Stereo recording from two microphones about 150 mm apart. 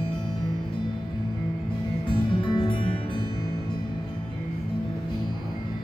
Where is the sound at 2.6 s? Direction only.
35° left (ahead or behind).